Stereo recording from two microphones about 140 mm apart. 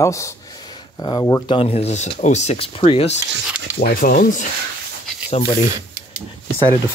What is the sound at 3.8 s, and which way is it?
Speech, 90° left.